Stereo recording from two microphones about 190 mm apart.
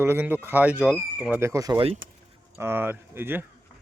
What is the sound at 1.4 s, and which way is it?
Speech, 15° right (ahead or behind).